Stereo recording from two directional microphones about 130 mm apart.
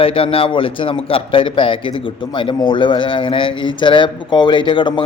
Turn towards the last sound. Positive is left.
turn(degrees=35)  # may be behind; listen again after turning